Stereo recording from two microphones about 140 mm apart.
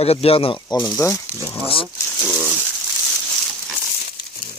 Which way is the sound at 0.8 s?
20° left (ahead or behind).